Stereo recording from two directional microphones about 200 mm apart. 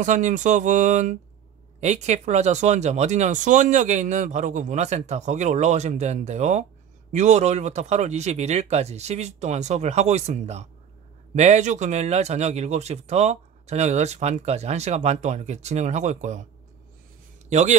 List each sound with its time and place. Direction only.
0.0 s speech: 35° right (ahead or behind)
17.5 s a man's voice: 35° right (ahead or behind)